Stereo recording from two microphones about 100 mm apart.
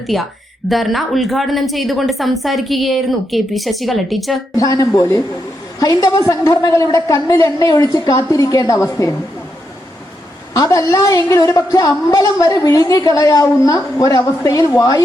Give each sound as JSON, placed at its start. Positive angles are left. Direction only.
{"t": 0.1, "sound": "speech", "side_deg": 0}
{"t": 4.5, "sound": "a woman's voice", "side_deg": 35}
{"t": 10.5, "sound": "a woman's voice", "side_deg": 35}